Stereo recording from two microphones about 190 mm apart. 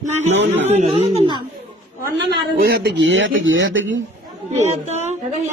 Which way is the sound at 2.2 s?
60° right (ahead or behind).